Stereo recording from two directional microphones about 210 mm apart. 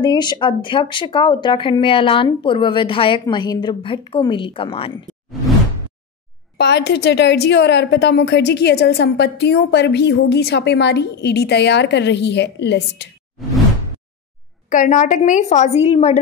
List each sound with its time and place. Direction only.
0.0 s speech: 20° left (ahead or behind)
6.6 s a woman's voice: 55° left (ahead or behind)
14.7 s a woman's voice: 35° left (ahead or behind)